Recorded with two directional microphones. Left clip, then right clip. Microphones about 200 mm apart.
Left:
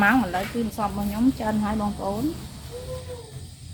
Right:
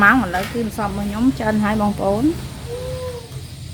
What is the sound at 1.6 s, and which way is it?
Speech, 40° right (ahead or behind).